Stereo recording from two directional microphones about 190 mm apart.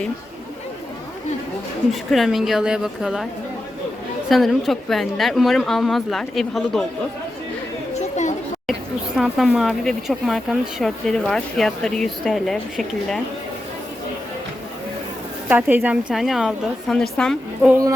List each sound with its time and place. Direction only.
1.9 s speech: centre (ahead or behind)
4.3 s speech: centre (ahead or behind)
9.1 s speech: centre (ahead or behind)
15.4 s speech: 10° right (ahead or behind)
17.7 s a woman's voice: 15° right (ahead or behind)